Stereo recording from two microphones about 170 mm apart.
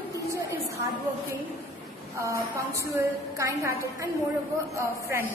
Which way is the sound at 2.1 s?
15° right (ahead or behind).